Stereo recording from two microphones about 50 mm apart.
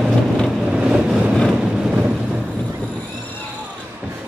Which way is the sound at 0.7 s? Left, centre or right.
Centre.